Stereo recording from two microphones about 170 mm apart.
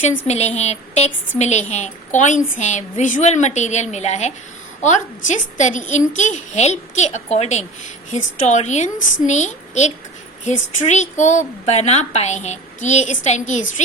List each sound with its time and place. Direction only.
0.3 s a woman's voice: 40° left (ahead or behind)